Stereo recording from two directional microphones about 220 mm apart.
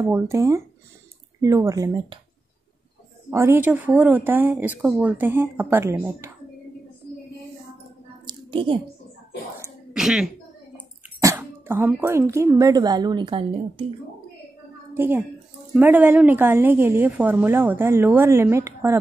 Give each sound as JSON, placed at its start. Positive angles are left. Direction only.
{"t": 0.0, "sound": "a woman's voice", "side_deg": -15}
{"t": 3.3, "sound": "a woman's voice", "side_deg": -10}
{"t": 8.3, "sound": "squish", "side_deg": -25}
{"t": 9.9, "sound": "a woman's voice", "side_deg": -5}
{"t": 15.0, "sound": "a woman's voice", "side_deg": -10}